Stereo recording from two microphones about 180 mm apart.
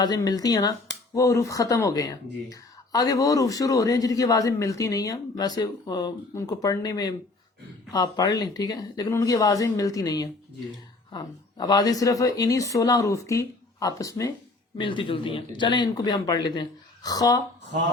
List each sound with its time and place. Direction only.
0.0 s speech: 20° left (ahead or behind)
14.8 s speech: 30° left (ahead or behind)